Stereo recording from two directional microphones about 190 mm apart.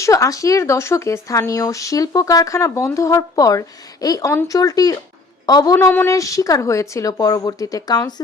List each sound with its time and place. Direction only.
0.0 s speech: 15° left (ahead or behind)